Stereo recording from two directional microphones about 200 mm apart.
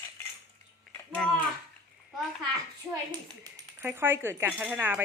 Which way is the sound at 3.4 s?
10° right (ahead or behind).